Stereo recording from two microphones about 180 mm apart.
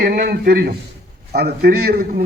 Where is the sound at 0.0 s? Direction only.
65° right (ahead or behind).